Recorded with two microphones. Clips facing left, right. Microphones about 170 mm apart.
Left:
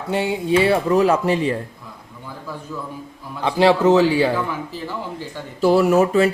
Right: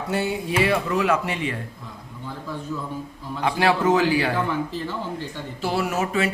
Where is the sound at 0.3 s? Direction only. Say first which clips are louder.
Left 7 dB; 30° left (ahead or behind).